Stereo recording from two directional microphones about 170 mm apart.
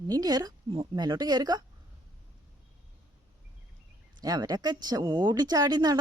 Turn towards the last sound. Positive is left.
turn(degrees=-25)  # may be behind; listen again after turning